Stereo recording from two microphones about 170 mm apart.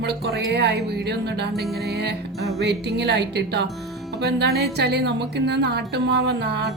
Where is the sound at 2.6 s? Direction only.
80° right.